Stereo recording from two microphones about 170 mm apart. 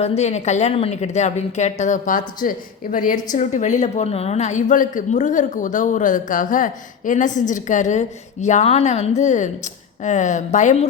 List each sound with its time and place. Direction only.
0.0 s a woman's voice: 40° left (ahead or behind)